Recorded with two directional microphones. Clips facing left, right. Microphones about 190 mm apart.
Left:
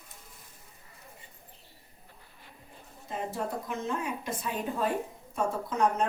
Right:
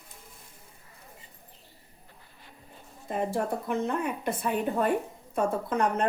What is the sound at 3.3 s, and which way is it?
Speech, 60° right (ahead or behind).